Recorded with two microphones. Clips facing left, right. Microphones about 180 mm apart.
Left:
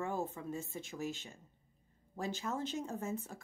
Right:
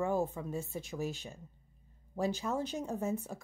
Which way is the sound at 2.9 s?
20° right (ahead or behind).